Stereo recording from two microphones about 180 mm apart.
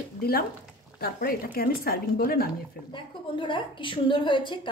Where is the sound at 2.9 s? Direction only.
25° left (ahead or behind).